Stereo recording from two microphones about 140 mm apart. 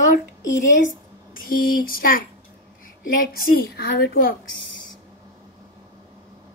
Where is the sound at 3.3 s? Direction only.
90° left.